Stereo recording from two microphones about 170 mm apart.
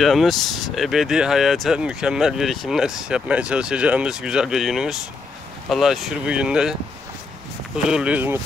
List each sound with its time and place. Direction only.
0.0 s speech: centre (ahead or behind)